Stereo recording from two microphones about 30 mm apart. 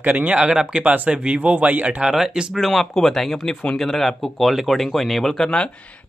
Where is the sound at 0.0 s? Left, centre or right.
Right.